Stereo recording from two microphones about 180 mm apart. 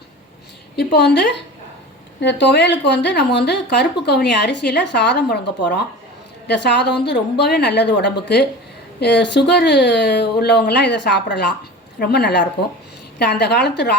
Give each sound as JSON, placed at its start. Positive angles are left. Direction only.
{"t": 0.8, "sound": "speech", "side_deg": 65}